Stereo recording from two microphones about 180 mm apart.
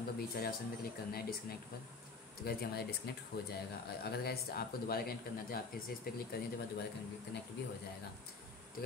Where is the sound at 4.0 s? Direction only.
60° left (ahead or behind).